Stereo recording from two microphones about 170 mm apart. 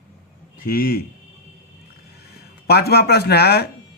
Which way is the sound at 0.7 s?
65° left (ahead or behind).